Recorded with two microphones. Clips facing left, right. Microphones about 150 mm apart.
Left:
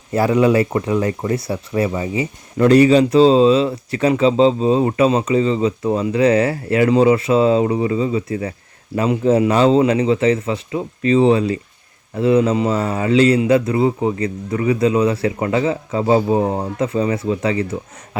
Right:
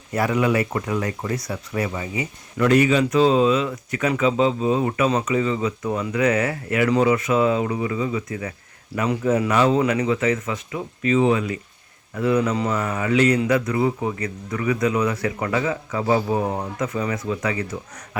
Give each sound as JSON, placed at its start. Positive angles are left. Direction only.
{"t": 0.1, "sound": "speech", "side_deg": 30}